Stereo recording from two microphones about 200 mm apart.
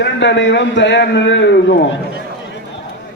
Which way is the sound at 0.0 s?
60° left (ahead or behind).